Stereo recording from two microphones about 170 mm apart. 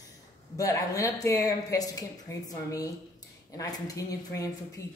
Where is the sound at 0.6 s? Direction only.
20° left (ahead or behind).